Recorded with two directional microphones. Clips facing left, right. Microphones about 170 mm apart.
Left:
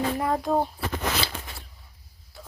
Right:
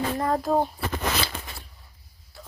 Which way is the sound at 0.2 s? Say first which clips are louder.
Right 4 dB; centre (ahead or behind).